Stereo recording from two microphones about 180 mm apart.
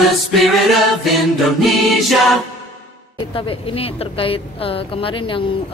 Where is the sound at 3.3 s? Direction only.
30° left (ahead or behind).